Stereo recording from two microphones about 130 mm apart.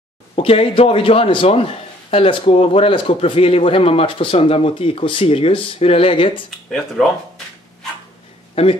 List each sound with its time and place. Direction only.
0.4 s a man's voice: 45° left (ahead or behind)